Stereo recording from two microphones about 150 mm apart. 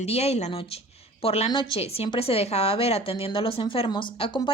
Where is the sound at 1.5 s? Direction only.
30° left (ahead or behind).